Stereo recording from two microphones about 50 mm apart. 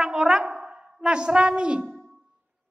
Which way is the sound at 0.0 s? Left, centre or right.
Centre.